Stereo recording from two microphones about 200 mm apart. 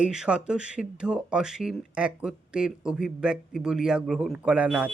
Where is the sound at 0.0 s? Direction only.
5° right (ahead or behind).